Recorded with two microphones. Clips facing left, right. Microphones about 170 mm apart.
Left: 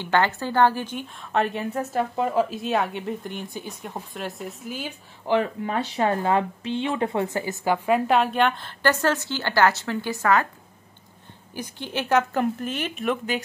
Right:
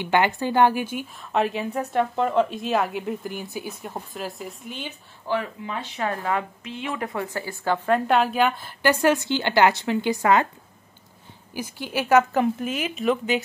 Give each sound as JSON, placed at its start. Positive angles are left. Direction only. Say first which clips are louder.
{"t": 0.0, "sound": "a woman's voice", "louder": "right 1 dB", "side_deg": -15}
{"t": 5.3, "sound": "speech", "louder": "left 4 dB", "side_deg": 20}
{"t": 5.9, "sound": "a woman's voice", "louder": "left 4 dB", "side_deg": 30}
{"t": 7.6, "sound": "speech", "louder": "even", "side_deg": 10}
{"t": 8.1, "sound": "a woman's voice", "louder": "even", "side_deg": 0}
{"t": 11.8, "sound": "a woman's voice", "louder": "right 3 dB", "side_deg": -10}